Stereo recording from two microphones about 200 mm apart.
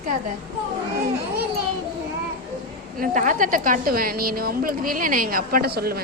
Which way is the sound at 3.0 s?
40° right (ahead or behind).